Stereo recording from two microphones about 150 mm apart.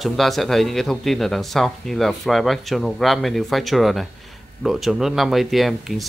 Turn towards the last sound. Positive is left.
turn(degrees=0)  # may be behind; listen again after turning